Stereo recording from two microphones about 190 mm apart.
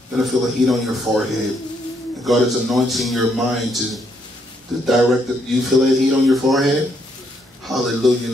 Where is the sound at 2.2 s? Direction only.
Centre (ahead or behind).